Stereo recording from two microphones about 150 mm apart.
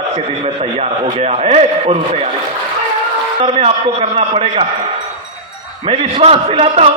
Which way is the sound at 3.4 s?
40° right (ahead or behind).